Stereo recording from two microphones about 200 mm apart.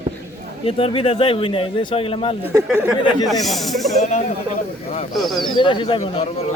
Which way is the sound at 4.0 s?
35° left (ahead or behind).